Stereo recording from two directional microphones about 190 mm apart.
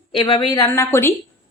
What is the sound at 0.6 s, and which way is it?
Speech, 15° left (ahead or behind).